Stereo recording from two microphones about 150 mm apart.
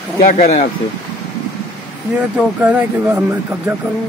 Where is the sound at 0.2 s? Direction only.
65° left (ahead or behind).